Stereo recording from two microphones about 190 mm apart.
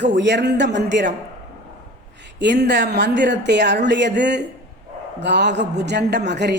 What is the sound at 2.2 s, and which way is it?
Speech, 65° right (ahead or behind).